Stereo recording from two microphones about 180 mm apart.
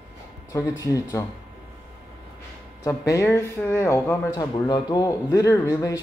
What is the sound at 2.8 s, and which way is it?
A man's voice, 15° left (ahead or behind).